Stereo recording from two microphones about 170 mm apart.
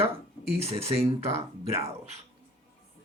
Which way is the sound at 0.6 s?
35° right (ahead or behind).